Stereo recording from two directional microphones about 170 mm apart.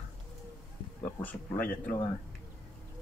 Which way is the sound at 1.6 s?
55° left (ahead or behind).